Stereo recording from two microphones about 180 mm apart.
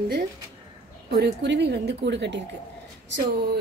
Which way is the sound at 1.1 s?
70° right (ahead or behind).